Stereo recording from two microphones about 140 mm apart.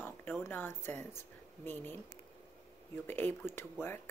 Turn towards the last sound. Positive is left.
turn(degrees=15)  # may be behind; listen again after turning